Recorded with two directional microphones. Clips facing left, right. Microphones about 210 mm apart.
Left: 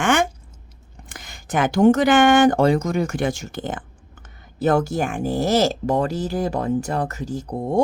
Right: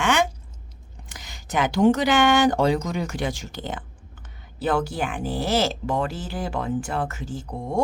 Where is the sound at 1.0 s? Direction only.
55° left (ahead or behind).